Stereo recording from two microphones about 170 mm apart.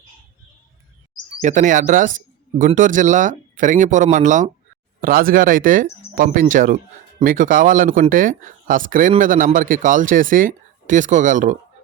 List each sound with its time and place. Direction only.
1.4 s speech: 45° right (ahead or behind)